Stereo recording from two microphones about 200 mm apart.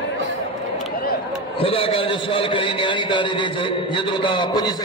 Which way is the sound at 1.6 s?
30° left (ahead or behind).